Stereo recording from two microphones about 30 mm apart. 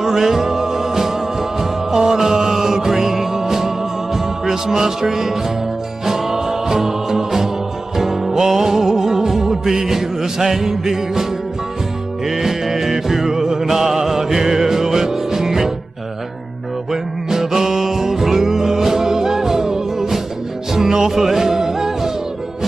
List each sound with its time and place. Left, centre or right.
0.0 s music: centre
12.3 s music: centre
16.9 s music: centre